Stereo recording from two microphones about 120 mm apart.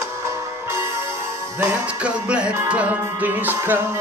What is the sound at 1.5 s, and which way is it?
Music, 10° right (ahead or behind).